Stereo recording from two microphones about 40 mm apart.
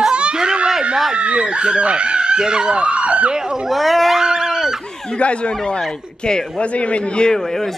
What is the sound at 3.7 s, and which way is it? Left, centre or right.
Speech, centre.